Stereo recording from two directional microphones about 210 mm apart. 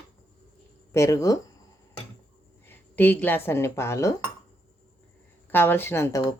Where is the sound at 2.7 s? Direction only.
10° left (ahead or behind).